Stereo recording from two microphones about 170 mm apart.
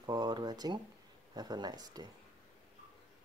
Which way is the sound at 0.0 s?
25° right (ahead or behind).